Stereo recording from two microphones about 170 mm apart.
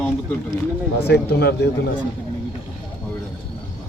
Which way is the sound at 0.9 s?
80° left.